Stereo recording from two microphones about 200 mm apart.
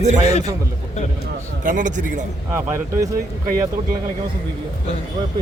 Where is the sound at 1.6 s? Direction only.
40° right (ahead or behind).